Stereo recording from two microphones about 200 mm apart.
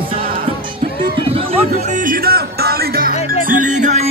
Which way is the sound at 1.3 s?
35° right (ahead or behind).